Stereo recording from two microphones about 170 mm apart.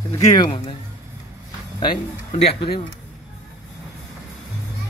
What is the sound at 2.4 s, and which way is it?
Speech, 30° left (ahead or behind).